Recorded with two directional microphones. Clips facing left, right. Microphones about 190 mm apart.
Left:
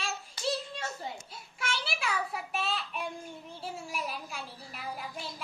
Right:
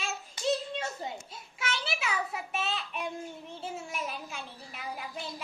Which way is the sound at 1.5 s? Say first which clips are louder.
Right 1 dB; centre (ahead or behind).